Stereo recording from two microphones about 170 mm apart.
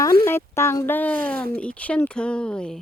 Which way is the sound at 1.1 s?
55° right (ahead or behind).